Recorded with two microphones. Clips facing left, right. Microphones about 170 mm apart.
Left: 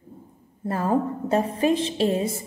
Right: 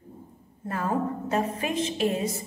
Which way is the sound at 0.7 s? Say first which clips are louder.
Left 4 dB; 30° left (ahead or behind).